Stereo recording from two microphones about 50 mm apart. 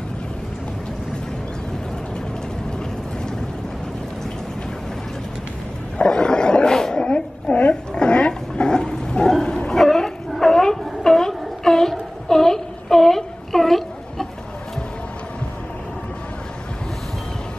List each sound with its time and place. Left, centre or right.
5.9 s roar: centre
7.7 s dog: centre
9.7 s a sound: centre